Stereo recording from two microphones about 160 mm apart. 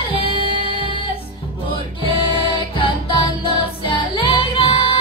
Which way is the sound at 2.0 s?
30° left (ahead or behind).